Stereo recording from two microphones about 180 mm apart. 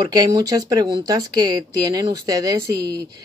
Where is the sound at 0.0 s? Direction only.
20° right (ahead or behind).